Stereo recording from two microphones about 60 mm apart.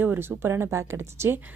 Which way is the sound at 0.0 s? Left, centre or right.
Right.